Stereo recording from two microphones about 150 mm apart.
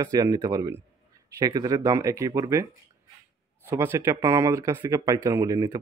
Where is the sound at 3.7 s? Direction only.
15° right (ahead or behind).